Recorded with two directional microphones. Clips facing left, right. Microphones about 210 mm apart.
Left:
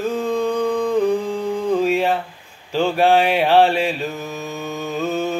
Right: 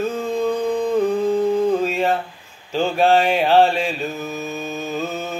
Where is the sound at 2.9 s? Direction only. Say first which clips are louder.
Even; 10° left (ahead or behind).